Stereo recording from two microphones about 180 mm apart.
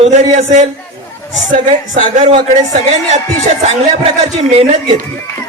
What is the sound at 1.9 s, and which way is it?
Speech, 35° right (ahead or behind).